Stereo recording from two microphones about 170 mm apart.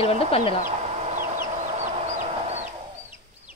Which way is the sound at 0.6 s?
40° right (ahead or behind).